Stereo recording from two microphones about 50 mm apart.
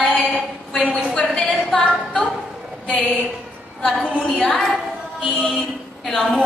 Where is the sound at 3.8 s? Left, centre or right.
Centre.